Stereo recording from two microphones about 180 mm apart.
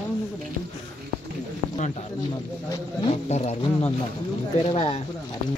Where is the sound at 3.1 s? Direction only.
35° left (ahead or behind).